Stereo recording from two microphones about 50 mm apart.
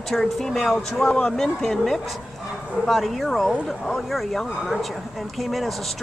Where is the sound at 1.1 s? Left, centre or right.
Left.